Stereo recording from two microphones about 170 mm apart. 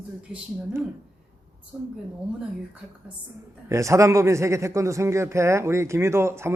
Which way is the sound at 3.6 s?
15° right (ahead or behind).